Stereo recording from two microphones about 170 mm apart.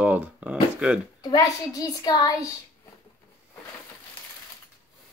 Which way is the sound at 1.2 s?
20° left (ahead or behind).